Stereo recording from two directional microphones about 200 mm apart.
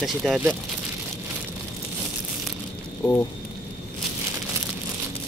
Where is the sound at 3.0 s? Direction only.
10° left (ahead or behind).